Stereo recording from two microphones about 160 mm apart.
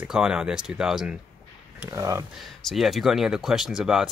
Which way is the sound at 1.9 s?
20° right (ahead or behind).